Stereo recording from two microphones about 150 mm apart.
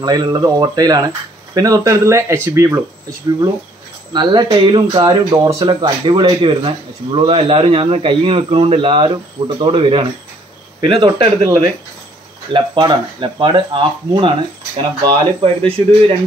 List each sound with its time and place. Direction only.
0.0 s speech: 25° right (ahead or behind)
4.1 s speech: 30° right (ahead or behind)